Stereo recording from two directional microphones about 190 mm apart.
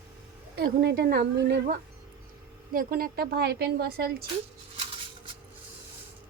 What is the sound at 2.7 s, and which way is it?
A woman's voice, 50° right (ahead or behind).